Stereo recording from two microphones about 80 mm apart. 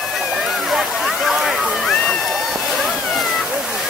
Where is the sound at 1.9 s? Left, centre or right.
Centre.